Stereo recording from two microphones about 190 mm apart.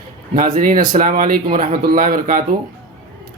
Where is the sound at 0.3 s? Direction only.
45° right (ahead or behind).